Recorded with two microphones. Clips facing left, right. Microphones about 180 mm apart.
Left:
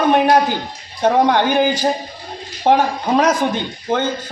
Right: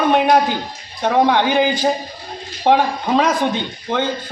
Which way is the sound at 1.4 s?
15° right (ahead or behind).